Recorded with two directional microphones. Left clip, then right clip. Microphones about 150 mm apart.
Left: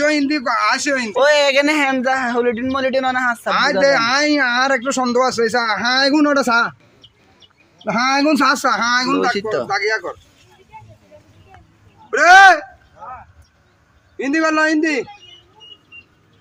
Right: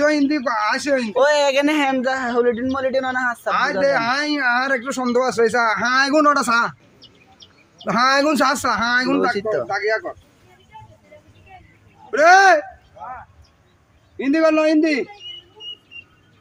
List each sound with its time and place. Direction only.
0.0 s speech: 30° left (ahead or behind)
1.1 s speech: 10° left (ahead or behind)
3.4 s speech: 25° left (ahead or behind); by 5.9 s 5° right (ahead or behind)
5.9 s speech: 25° right (ahead or behind)
6.2 s speech: 40° right (ahead or behind)
7.9 s speech: 35° right (ahead or behind)
8.8 s speech: 20° left (ahead or behind)
12.1 s speech: 20° left (ahead or behind)
14.2 s speech: 15° left (ahead or behind)